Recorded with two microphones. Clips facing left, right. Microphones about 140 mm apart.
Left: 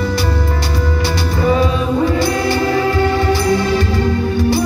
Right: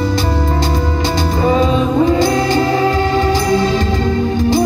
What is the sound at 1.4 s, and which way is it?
Music, 25° right (ahead or behind).